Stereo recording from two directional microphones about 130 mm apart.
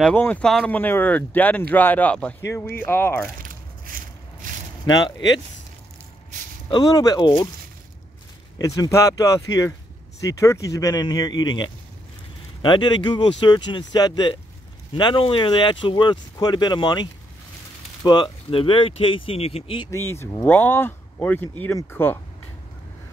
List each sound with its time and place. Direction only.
0.0 s speech: 10° left (ahead or behind)
3.4 s a sound: 90° right
4.8 s speech: 30° left (ahead or behind)
6.7 s speech: 30° left (ahead or behind)
8.5 s speech: 30° left (ahead or behind)
19.9 s speech: 20° left (ahead or behind)